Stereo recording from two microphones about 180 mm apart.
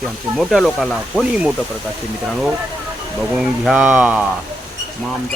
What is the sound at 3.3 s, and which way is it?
Speech, 5° right (ahead or behind).